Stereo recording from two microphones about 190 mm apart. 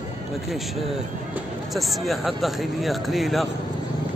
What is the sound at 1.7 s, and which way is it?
Speech, centre (ahead or behind).